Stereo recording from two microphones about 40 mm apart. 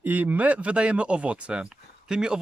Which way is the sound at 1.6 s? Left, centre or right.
Centre.